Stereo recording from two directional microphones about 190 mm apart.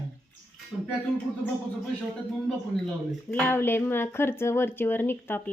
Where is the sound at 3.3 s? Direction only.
10° left (ahead or behind).